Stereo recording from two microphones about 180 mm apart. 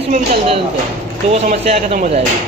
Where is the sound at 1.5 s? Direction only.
40° right (ahead or behind).